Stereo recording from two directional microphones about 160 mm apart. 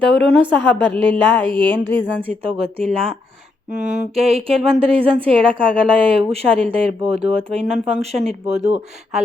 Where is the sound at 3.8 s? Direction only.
50° right (ahead or behind).